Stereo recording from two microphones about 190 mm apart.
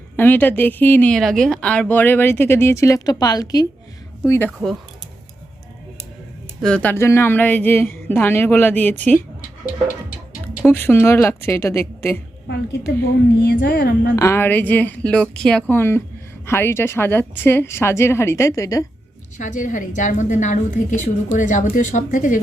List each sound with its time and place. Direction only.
0.2 s speech: 10° left (ahead or behind)
6.6 s speech: 5° left (ahead or behind)
9.4 s music: 45° left (ahead or behind)
10.7 s speech: 10° left (ahead or behind)
13.4 s speech: 60° left (ahead or behind)
14.2 s speech: 15° left (ahead or behind)
19.4 s a woman's voice: 40° left (ahead or behind)